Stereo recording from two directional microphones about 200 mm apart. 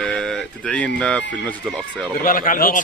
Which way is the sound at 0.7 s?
5° left (ahead or behind).